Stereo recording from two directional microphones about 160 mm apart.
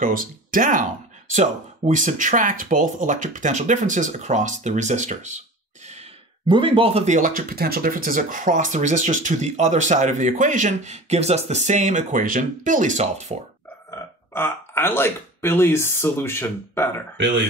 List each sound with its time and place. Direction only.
0.0 s speech: 60° right (ahead or behind)
6.4 s speech: 30° right (ahead or behind)
7.2 s speech: 55° right (ahead or behind)
13.8 s speech: 15° left (ahead or behind)